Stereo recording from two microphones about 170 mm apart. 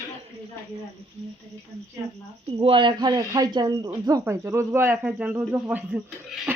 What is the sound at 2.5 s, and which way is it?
Speech, 35° right (ahead or behind).